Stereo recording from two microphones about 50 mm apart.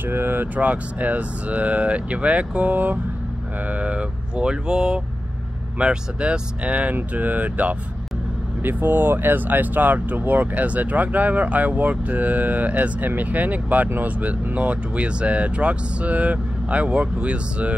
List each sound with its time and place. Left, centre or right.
0.1 s speech: right
0.6 s speech: right
8.6 s speech: right